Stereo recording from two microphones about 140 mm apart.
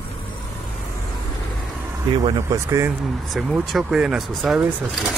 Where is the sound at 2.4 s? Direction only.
25° right (ahead or behind).